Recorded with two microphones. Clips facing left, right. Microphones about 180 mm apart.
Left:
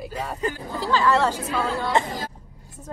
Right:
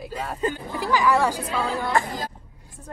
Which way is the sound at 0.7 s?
15° right (ahead or behind).